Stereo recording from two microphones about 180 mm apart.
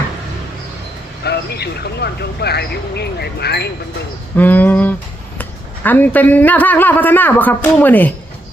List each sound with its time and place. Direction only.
1.2 s speech: 65° left (ahead or behind)
4.4 s a sound: 10° left (ahead or behind)
5.4 s speech: 10° left (ahead or behind)